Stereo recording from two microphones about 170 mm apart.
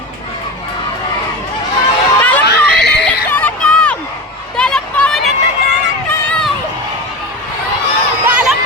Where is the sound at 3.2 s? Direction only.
10° left (ahead or behind).